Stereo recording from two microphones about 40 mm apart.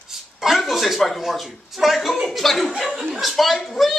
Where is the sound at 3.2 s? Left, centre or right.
Centre.